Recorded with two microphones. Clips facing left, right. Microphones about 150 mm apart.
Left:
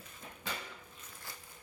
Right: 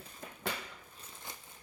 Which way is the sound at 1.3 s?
20° right (ahead or behind).